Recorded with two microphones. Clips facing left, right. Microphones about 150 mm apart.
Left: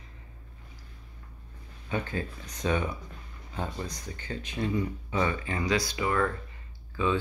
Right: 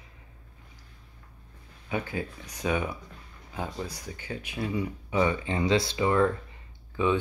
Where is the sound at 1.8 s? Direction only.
10° right (ahead or behind).